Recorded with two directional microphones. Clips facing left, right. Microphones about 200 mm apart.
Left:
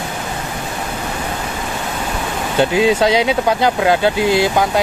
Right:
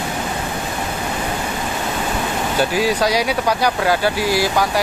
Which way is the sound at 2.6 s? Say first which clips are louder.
Left 5 dB; 20° left (ahead or behind).